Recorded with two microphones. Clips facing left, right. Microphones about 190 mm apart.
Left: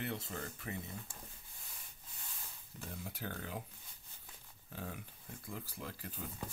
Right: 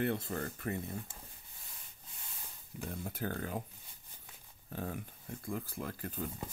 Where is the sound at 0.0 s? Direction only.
55° right (ahead or behind).